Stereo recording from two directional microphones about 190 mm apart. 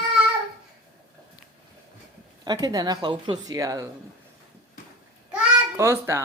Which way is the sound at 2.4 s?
20° right (ahead or behind).